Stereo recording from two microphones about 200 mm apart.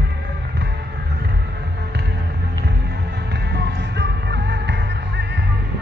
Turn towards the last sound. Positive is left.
turn(degrees=-60)  # may be behind; listen again after turning